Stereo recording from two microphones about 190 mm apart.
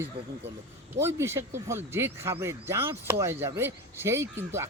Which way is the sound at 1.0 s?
15° right (ahead or behind).